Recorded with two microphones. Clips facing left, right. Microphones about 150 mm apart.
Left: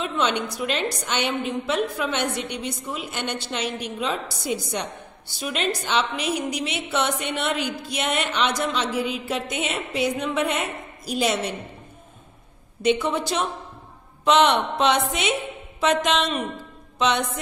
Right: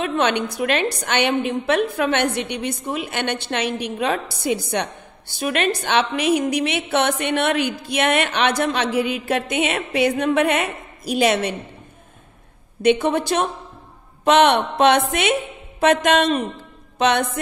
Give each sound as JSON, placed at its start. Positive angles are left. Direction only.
{"t": 0.0, "sound": "a woman's voice", "side_deg": -60}
{"t": 12.8, "sound": "a woman's voice", "side_deg": -55}